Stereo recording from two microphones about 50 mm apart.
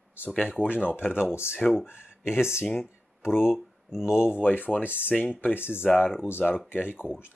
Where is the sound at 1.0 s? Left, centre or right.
Centre.